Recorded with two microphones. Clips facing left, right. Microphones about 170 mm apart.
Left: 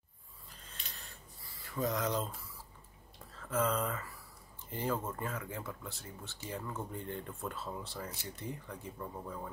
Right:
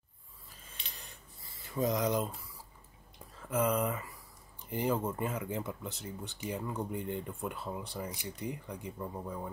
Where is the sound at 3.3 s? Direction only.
15° right (ahead or behind).